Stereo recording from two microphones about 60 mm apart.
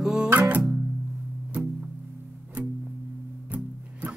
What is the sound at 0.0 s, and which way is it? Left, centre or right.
Music, centre.